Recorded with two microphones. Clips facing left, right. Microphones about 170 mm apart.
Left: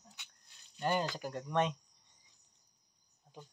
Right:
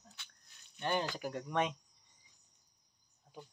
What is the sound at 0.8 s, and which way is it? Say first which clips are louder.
Speech: left 1 dB; 5° left (ahead or behind).